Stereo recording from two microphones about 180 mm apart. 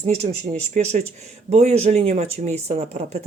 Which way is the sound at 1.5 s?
35° right (ahead or behind).